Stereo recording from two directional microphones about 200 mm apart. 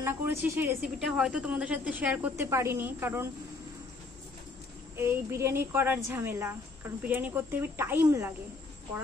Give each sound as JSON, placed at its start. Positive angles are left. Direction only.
{"t": 0.0, "sound": "a woman's voice", "side_deg": -10}
{"t": 4.9, "sound": "a woman's voice", "side_deg": -10}